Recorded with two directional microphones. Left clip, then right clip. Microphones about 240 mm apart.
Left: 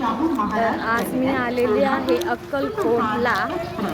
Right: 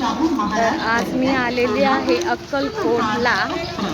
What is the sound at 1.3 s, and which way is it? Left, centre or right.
Speech, centre.